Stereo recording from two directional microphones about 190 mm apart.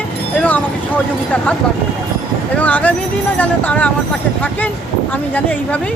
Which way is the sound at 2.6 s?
10° left (ahead or behind).